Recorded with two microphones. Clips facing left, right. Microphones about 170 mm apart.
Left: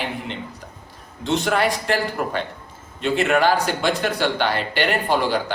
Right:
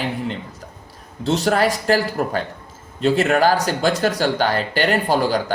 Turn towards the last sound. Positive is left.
turn(degrees=-40)  # may be behind; listen again after turning